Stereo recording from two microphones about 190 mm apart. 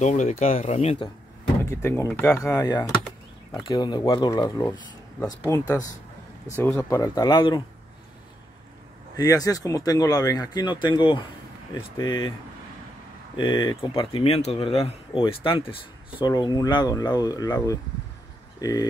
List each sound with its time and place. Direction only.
0.0 s speech: 40° left (ahead or behind)
1.7 s speech: 15° left (ahead or behind)
9.1 s speech: 20° left (ahead or behind)
13.4 s speech: 25° left (ahead or behind)